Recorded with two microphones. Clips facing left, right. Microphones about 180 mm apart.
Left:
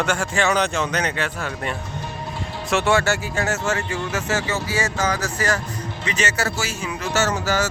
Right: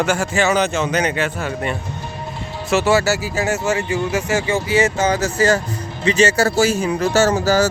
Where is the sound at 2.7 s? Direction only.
5° right (ahead or behind).